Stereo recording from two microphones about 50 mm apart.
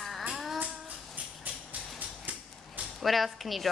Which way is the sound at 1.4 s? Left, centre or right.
Right.